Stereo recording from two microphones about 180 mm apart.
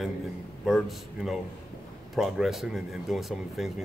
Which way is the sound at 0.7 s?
Centre (ahead or behind).